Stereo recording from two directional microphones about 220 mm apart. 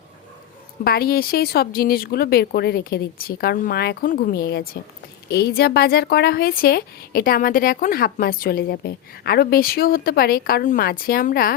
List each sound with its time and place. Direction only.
0.9 s speech: 45° left (ahead or behind)